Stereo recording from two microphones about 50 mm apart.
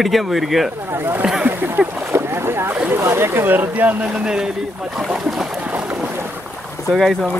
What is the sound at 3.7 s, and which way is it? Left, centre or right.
Speech, right.